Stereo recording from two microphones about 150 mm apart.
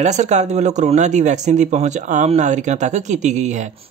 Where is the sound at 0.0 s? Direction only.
50° right (ahead or behind).